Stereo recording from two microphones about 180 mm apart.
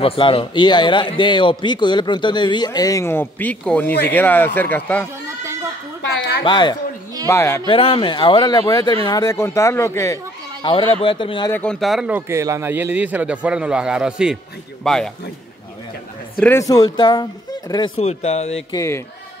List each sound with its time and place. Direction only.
0.0 s a man's voice: 30° left (ahead or behind); by 5.0 s 10° left (ahead or behind)
6.4 s a man's voice: 25° left (ahead or behind)
7.2 s speech: 15° left (ahead or behind)
7.6 s a man's voice: 30° left (ahead or behind); by 10.1 s 15° left (ahead or behind)
10.6 s a man's voice: 30° left (ahead or behind)
11.5 s speech: 5° left (ahead or behind)
16.3 s a man's voice: 15° left (ahead or behind); by 18.6 s 35° left (ahead or behind)
18.7 s speech: 15° left (ahead or behind)